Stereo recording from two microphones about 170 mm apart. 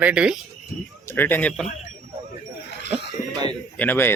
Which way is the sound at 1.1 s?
10° left (ahead or behind).